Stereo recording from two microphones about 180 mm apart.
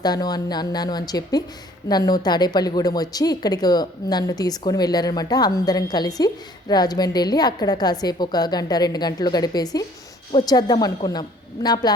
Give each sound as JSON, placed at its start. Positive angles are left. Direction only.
{"t": 0.0, "sound": "a woman's voice", "side_deg": 20}